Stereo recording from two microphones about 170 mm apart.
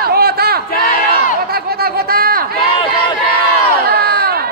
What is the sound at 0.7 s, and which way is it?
Crowd, 60° left (ahead or behind).